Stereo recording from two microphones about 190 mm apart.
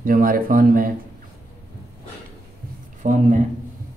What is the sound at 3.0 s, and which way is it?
Speech, 40° right (ahead or behind).